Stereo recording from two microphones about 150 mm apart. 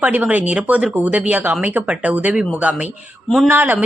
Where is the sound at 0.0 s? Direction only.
10° right (ahead or behind).